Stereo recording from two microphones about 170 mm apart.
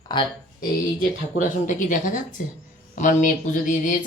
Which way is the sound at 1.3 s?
50° left (ahead or behind).